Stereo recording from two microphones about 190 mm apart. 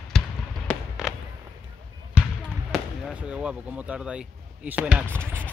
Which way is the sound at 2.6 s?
5° right (ahead or behind).